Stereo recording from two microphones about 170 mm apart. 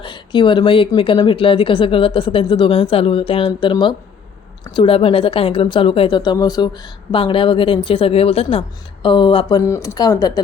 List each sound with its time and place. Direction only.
0.0 s speech: 30° left (ahead or behind)
9.6 s speech: 20° left (ahead or behind)